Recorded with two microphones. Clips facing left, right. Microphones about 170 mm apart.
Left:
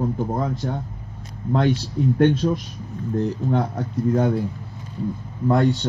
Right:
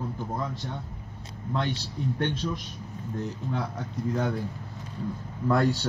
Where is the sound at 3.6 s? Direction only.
45° left (ahead or behind).